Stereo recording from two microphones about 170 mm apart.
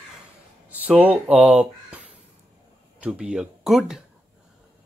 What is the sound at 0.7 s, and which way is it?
Speech, 10° right (ahead or behind).